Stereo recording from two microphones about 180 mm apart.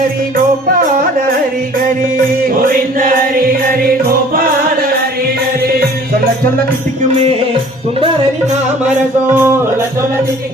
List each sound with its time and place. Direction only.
2.6 s music: 50° right (ahead or behind)
9.3 s music: 10° right (ahead or behind)